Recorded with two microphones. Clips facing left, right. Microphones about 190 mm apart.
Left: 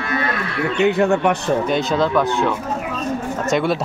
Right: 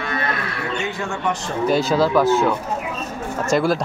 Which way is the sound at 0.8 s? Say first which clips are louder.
Left 15 dB; 65° left (ahead or behind).